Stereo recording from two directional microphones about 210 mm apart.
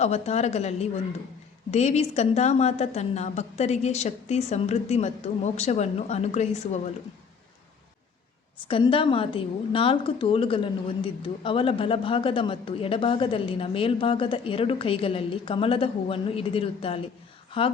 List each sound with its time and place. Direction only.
0.0 s a woman's voice: 30° left (ahead or behind)
8.6 s a woman's voice: 25° left (ahead or behind)